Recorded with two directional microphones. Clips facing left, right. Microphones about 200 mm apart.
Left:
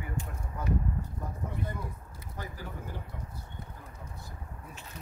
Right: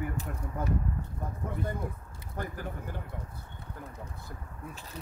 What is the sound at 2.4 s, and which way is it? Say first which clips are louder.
Speech: right 5 dB; 55° right (ahead or behind).